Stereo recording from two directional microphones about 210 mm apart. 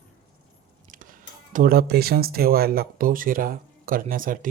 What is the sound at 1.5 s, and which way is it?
Speech, 45° right (ahead or behind).